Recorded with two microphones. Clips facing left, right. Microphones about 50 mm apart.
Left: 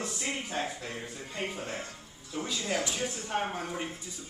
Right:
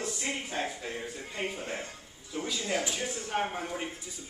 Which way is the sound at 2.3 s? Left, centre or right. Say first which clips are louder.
Even; centre.